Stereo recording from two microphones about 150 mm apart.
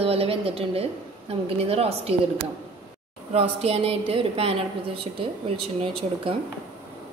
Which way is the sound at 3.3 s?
40° right (ahead or behind).